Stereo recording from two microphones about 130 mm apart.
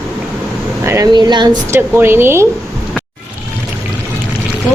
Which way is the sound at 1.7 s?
20° right (ahead or behind).